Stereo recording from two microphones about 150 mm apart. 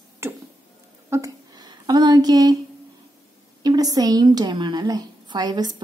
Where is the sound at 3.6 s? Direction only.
25° right (ahead or behind).